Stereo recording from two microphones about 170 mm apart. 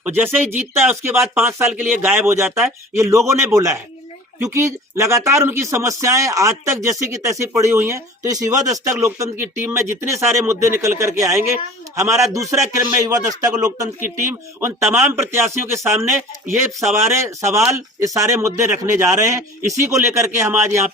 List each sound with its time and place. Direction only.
0.0 s a man's voice: 10° right (ahead or behind)